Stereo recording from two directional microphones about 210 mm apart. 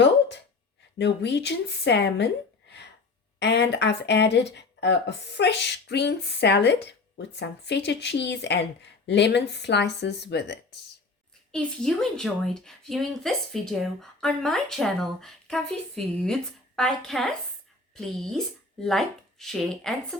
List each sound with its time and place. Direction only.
0.9 s speech: 55° left (ahead or behind)
11.5 s a woman's voice: 5° left (ahead or behind)